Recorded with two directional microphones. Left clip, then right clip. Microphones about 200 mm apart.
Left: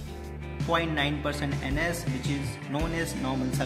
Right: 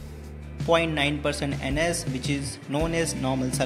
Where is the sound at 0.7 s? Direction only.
30° right (ahead or behind).